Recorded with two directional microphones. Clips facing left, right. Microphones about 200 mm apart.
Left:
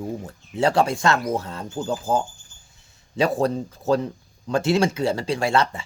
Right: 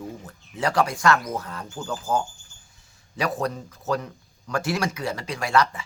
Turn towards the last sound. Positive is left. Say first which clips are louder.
# left 1 dB
turn(degrees=25)  # may be behind; listen again after turning